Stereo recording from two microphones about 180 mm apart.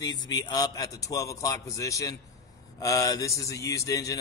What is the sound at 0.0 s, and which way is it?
A man's voice, 20° left (ahead or behind).